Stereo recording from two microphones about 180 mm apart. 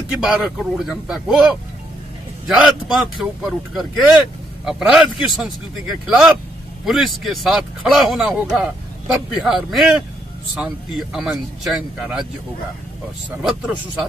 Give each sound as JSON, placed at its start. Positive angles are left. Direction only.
{"t": 0.1, "sound": "a man's voice", "side_deg": -5}